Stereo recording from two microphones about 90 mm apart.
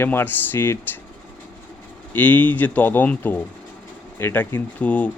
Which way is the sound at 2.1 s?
20° left (ahead or behind).